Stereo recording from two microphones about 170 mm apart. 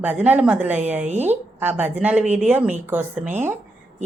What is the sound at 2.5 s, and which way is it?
Speech, 10° right (ahead or behind).